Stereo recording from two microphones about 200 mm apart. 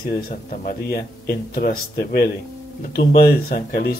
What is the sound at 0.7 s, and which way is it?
Speech, 50° left (ahead or behind).